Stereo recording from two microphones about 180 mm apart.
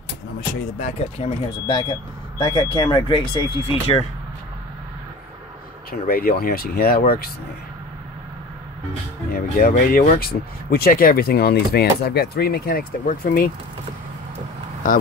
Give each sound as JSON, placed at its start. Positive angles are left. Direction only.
{"t": 0.7, "sound": "speech", "side_deg": 40}
{"t": 2.3, "sound": "speech", "side_deg": 20}
{"t": 5.9, "sound": "speech", "side_deg": 55}
{"t": 9.3, "sound": "speech", "side_deg": 55}